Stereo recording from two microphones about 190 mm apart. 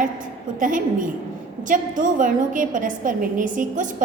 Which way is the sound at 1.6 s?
45° right (ahead or behind).